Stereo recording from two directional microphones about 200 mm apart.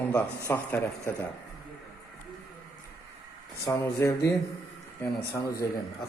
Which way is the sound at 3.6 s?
15° left (ahead or behind).